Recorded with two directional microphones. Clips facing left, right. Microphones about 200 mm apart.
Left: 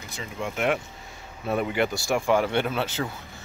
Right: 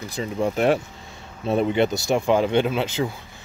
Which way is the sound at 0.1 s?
35° right (ahead or behind).